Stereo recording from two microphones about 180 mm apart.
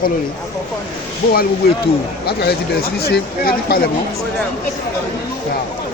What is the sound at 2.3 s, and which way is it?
Speech, 60° left (ahead or behind).